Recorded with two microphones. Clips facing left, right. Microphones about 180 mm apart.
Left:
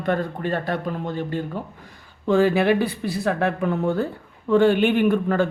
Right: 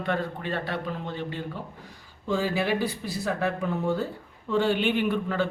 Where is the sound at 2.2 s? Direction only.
60° left (ahead or behind).